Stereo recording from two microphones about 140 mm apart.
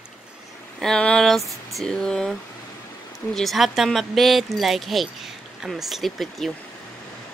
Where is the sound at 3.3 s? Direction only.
Centre (ahead or behind).